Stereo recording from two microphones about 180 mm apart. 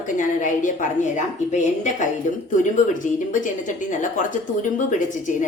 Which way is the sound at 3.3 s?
45° left (ahead or behind).